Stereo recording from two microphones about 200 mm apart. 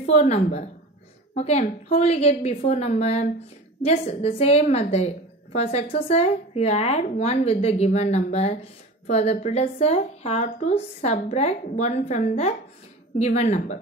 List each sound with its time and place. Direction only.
0.0 s a woman's voice: 35° left (ahead or behind)